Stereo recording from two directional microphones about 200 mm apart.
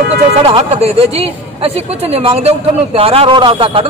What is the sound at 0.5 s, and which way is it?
A man's voice, 30° right (ahead or behind).